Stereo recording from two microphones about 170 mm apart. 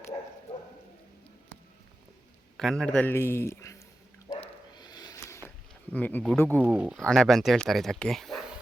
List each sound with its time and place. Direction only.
2.6 s speech: centre (ahead or behind)
4.3 s dog: 25° left (ahead or behind)
5.9 s speech: 10° left (ahead or behind)
6.6 s speech: 5° right (ahead or behind)